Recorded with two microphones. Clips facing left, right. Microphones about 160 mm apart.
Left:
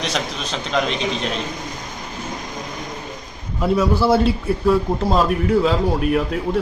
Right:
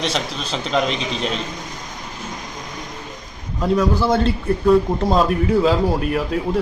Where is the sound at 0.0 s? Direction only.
Centre (ahead or behind).